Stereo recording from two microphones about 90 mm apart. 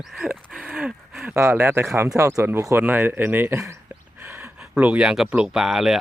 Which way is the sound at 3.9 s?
25° right (ahead or behind).